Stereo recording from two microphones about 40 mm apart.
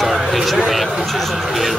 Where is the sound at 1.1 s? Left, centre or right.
Centre.